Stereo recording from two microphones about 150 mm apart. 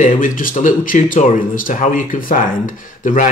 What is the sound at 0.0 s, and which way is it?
Speech, 65° left (ahead or behind).